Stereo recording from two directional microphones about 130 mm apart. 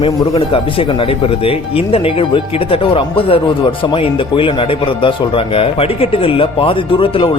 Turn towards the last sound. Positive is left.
turn(degrees=45)  # may be behind; listen again after turning